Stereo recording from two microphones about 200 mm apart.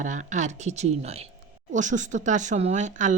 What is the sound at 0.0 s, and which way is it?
Speech, 40° right (ahead or behind).